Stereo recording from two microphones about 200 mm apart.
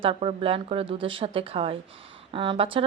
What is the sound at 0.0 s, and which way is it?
Speech, 30° right (ahead or behind).